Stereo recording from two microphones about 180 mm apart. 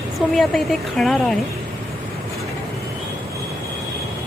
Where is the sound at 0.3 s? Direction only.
Centre (ahead or behind).